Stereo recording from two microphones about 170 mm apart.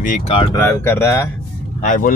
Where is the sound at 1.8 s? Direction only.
50° left (ahead or behind).